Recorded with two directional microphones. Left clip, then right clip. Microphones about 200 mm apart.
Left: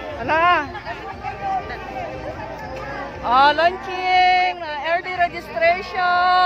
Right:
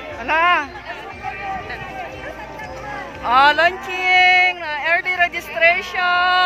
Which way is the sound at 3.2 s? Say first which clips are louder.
Right 2 dB; 10° right (ahead or behind).